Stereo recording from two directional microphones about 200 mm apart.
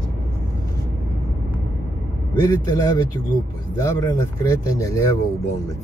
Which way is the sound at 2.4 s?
15° left (ahead or behind).